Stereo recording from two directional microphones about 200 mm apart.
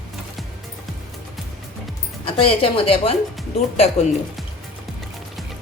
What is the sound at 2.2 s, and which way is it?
Speech, 25° left (ahead or behind).